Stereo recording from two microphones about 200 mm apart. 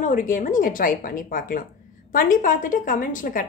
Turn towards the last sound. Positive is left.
turn(degrees=40)  # may be behind; listen again after turning